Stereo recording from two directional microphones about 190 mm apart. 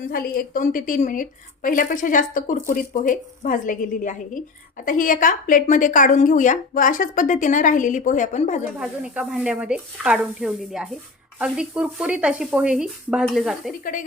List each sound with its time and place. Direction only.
0.3 s a woman's voice: 45° left (ahead or behind)
8.8 s speech: 5° right (ahead or behind)